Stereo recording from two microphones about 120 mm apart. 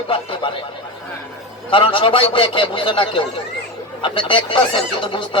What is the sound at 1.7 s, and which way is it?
Speech, 45° left (ahead or behind).